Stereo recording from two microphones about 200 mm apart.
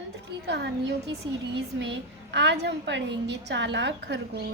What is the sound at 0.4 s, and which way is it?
A woman's voice, 60° right (ahead or behind).